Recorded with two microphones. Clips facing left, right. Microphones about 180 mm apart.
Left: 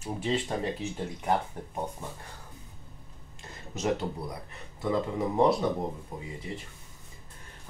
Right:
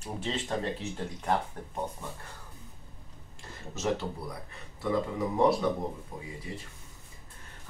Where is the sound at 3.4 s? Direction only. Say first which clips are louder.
Left 1 dB; 20° left (ahead or behind).